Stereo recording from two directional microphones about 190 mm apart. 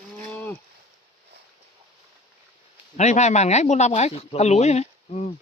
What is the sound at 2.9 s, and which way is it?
Speech, 35° left (ahead or behind).